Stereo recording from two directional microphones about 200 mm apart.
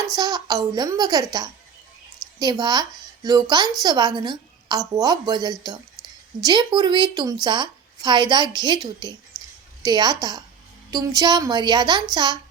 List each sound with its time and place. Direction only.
0.1 s a woman's voice: 20° right (ahead or behind)